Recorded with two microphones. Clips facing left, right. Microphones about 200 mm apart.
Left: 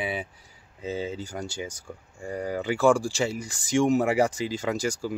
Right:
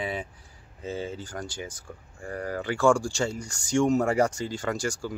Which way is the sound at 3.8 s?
15° left (ahead or behind).